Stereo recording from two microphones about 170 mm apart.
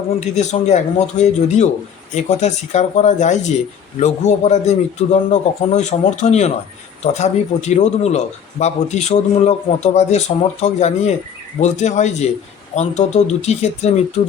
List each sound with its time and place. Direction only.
0.3 s a man's voice: 40° left (ahead or behind)